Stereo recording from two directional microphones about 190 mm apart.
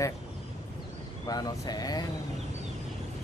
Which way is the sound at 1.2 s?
20° left (ahead or behind).